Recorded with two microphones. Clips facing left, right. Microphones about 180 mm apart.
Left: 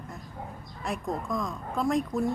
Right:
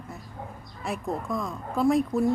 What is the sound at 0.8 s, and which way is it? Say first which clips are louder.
Speech: right 1 dB; 5° right (ahead or behind).